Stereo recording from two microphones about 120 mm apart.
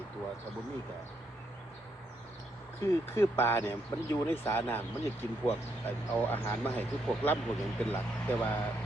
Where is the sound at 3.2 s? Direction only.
20° left (ahead or behind).